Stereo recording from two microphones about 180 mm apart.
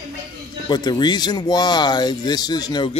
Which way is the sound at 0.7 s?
25° left (ahead or behind).